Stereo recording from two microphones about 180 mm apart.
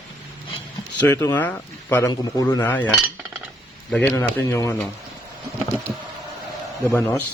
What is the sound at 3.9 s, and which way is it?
Speech, 5° left (ahead or behind).